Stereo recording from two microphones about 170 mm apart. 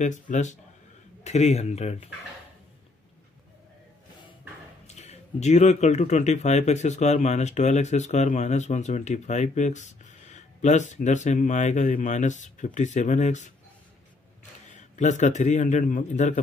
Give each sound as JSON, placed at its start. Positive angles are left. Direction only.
{"t": 0.0, "sound": "speech", "side_deg": 45}
{"t": 4.8, "sound": "speech", "side_deg": 40}
{"t": 14.7, "sound": "a man's voice", "side_deg": 45}